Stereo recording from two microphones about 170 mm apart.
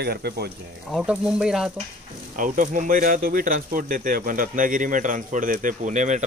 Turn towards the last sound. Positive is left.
turn(degrees=-45)  # may be behind; listen again after turning